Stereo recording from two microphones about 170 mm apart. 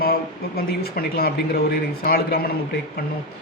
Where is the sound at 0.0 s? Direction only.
65° left (ahead or behind).